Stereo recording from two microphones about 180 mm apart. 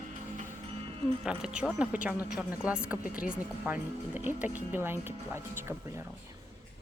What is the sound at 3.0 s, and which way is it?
Speech, 50° left (ahead or behind).